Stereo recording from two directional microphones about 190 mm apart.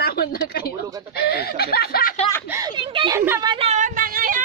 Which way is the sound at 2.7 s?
25° right (ahead or behind).